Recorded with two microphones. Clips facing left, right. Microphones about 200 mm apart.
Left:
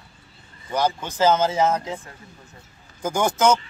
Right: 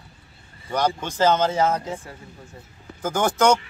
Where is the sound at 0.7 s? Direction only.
5° left (ahead or behind).